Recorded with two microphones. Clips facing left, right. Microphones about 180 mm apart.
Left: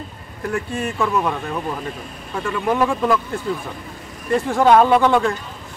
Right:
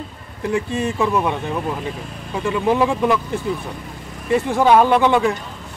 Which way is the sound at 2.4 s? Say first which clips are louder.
Right 2 dB; 20° right (ahead or behind).